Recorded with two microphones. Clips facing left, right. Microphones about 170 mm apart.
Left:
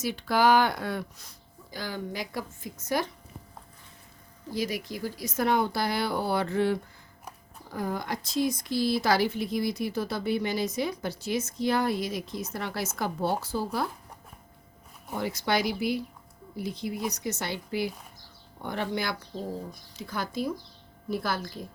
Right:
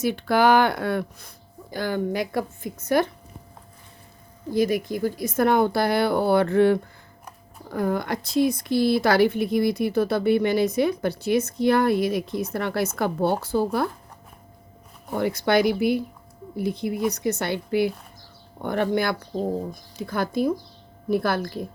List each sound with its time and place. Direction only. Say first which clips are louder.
0.0 s speech: right 5 dB; 55° right (ahead or behind)
4.5 s speech: right 9 dB; 55° right (ahead or behind)
15.1 s speech: right 7 dB; 60° right (ahead or behind)